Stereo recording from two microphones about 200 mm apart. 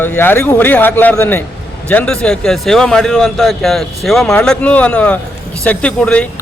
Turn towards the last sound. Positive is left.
turn(degrees=5)  # may be behind; listen again after turning